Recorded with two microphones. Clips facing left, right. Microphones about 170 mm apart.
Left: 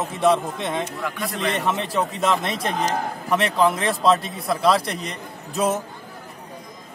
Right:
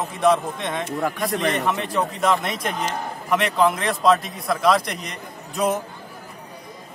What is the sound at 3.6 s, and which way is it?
Speech, centre (ahead or behind).